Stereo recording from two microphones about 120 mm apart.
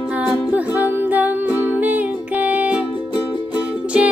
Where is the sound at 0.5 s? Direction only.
15° right (ahead or behind).